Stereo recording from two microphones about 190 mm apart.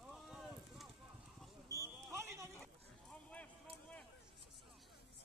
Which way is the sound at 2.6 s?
5° left (ahead or behind).